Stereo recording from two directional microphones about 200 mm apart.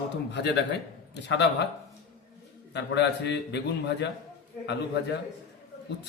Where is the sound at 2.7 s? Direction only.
60° left (ahead or behind).